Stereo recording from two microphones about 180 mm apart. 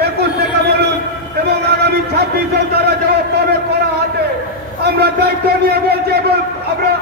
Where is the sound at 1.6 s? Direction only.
65° right (ahead or behind).